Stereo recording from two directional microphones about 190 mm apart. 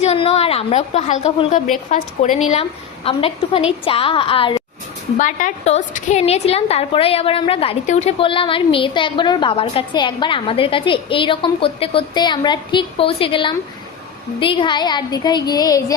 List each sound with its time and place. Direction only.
0.0 s a woman's voice: 35° left (ahead or behind)
5.1 s a woman's voice: 40° left (ahead or behind); by 16.0 s 20° left (ahead or behind)